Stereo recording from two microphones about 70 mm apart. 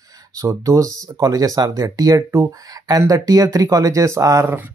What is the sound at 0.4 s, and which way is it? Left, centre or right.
Speech, right.